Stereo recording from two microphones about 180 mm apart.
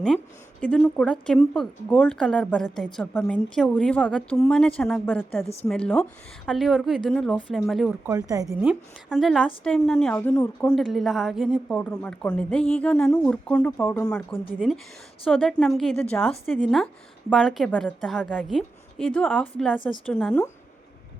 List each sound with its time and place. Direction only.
0.6 s speech: 5° left (ahead or behind)
8.0 s speech: 20° right (ahead or behind)
8.4 s speech: centre (ahead or behind)